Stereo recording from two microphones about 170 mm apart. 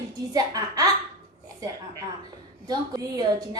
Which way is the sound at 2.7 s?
20° right (ahead or behind).